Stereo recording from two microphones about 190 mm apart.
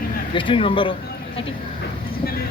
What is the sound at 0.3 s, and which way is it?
Speech, 25° left (ahead or behind).